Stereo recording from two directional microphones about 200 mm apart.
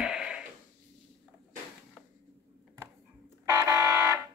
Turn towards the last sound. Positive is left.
turn(degrees=-15)  # may be behind; listen again after turning